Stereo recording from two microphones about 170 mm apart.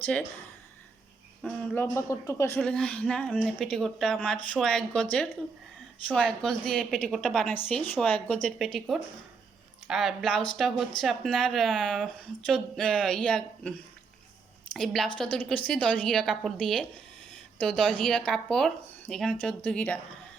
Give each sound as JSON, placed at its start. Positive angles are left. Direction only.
{"t": 0.0, "sound": "speech", "side_deg": 10}
{"t": 1.7, "sound": "speech", "side_deg": 15}
{"t": 2.6, "sound": "a woman's voice", "side_deg": 5}
{"t": 6.1, "sound": "a woman's voice", "side_deg": 5}